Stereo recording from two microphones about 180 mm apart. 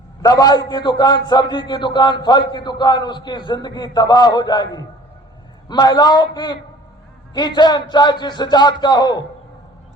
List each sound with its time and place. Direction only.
0.2 s a man's voice: 20° left (ahead or behind)